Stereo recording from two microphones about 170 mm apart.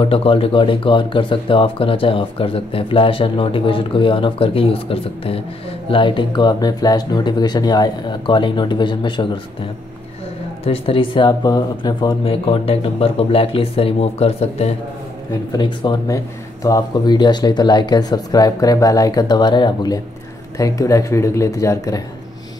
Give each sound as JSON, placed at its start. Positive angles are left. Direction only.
{"t": 0.0, "sound": "speech", "side_deg": 35}
{"t": 10.6, "sound": "speech", "side_deg": 35}
{"t": 15.5, "sound": "speech", "side_deg": 25}